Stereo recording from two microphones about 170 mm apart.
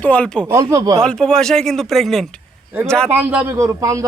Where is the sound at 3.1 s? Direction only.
10° right (ahead or behind).